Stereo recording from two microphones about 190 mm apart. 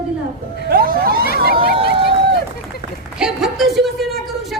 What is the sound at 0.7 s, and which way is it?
Music, 55° right (ahead or behind).